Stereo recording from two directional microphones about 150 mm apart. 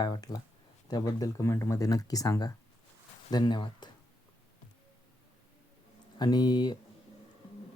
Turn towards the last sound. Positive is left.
turn(degrees=30)  # may be behind; listen again after turning